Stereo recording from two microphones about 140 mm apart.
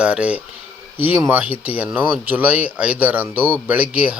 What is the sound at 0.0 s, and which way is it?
Speech, 10° right (ahead or behind).